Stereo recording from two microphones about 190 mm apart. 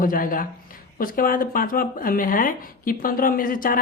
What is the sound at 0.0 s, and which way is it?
Speech, 45° left (ahead or behind).